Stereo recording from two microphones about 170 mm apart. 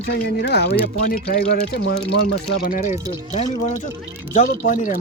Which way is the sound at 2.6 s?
50° left (ahead or behind).